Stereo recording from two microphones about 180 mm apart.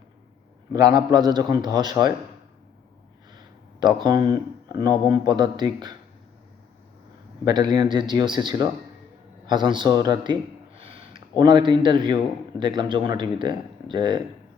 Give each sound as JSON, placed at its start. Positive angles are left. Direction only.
{"t": 0.7, "sound": "speech", "side_deg": -20}
{"t": 3.3, "sound": "a sound", "side_deg": -25}
{"t": 4.3, "sound": "speech", "side_deg": -20}
{"t": 7.4, "sound": "speech", "side_deg": -25}